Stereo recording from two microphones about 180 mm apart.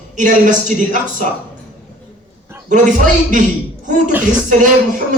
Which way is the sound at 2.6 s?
45° right (ahead or behind).